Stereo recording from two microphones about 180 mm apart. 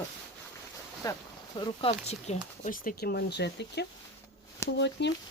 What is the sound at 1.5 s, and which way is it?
Speech, 30° left (ahead or behind).